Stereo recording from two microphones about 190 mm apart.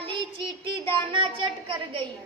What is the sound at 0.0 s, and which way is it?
Child singing, 25° right (ahead or behind).